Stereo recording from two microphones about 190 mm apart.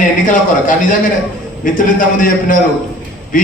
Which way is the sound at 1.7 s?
45° left (ahead or behind).